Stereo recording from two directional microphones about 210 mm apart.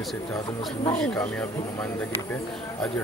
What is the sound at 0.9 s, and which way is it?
Speech, 5° left (ahead or behind).